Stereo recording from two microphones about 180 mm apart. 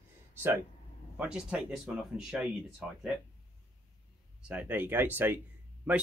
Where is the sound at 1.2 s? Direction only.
5° right (ahead or behind).